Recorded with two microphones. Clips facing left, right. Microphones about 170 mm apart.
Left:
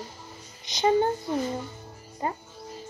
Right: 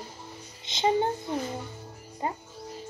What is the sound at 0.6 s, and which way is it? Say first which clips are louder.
Speech: left 3 dB; 20° right (ahead or behind).